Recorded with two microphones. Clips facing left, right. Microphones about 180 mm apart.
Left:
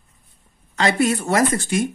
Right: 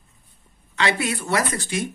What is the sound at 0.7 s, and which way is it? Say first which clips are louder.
Speech: left 5 dB; 45° left (ahead or behind).